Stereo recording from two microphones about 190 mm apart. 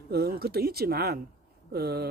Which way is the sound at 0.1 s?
55° right (ahead or behind).